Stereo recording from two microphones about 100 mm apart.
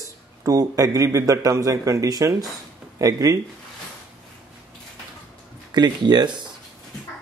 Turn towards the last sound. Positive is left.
turn(degrees=-45)  # may be behind; listen again after turning